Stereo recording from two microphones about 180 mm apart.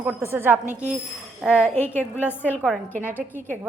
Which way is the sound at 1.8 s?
10° left (ahead or behind).